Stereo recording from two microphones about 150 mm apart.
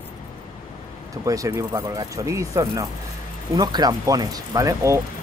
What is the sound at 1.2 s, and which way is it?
Speech, 20° right (ahead or behind).